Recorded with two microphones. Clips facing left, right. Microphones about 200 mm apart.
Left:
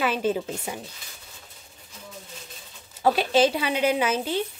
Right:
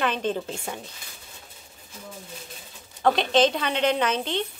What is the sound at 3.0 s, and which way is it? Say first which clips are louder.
Speech: even; 5° left (ahead or behind).